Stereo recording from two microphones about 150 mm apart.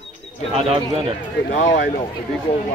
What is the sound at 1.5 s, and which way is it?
Speech, 55° left (ahead or behind).